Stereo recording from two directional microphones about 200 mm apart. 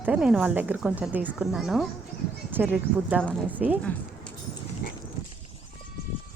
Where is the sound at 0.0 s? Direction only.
5° right (ahead or behind).